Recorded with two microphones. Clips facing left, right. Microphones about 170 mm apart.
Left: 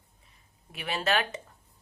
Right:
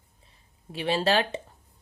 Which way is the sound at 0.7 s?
30° right (ahead or behind).